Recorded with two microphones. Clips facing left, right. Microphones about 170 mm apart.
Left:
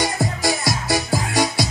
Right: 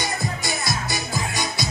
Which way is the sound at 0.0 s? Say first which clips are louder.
Left 6 dB; 90° left.